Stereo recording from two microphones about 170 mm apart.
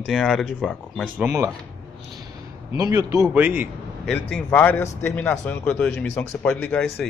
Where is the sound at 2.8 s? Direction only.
20° right (ahead or behind).